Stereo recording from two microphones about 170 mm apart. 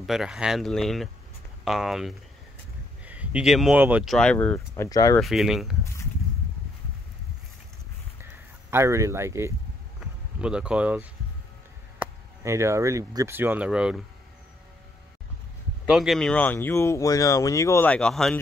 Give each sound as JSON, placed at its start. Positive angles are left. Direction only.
{"t": 0.0, "sound": "speech", "side_deg": -5}
{"t": 5.2, "sound": "speech", "side_deg": 0}
{"t": 8.2, "sound": "a sound", "side_deg": -15}
{"t": 12.0, "sound": "speech", "side_deg": -15}
{"t": 15.9, "sound": "speech", "side_deg": 0}